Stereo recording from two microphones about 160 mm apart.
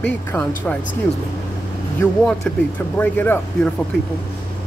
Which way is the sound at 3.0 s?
10° left (ahead or behind).